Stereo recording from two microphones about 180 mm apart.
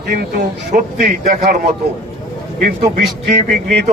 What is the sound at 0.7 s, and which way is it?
Speech, 50° right (ahead or behind).